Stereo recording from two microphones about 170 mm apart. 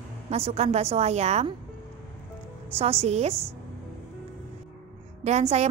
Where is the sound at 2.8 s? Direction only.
35° right (ahead or behind).